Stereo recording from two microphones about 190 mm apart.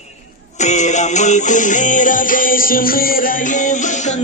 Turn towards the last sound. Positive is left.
turn(degrees=50)  # may be behind; listen again after turning